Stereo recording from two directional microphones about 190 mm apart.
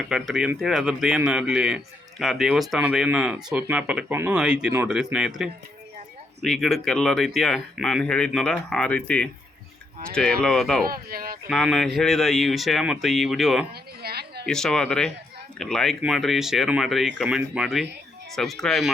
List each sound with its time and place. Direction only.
0.1 s a man's voice: 5° right (ahead or behind)
10.4 s a man's voice: centre (ahead or behind)
10.8 s speech: 50° right (ahead or behind)
11.4 s a man's voice: centre (ahead or behind)
14.0 s a sound: 55° right (ahead or behind)
14.4 s a man's voice: 5° left (ahead or behind)